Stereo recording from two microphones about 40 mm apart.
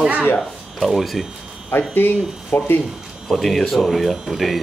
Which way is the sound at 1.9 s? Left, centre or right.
Left.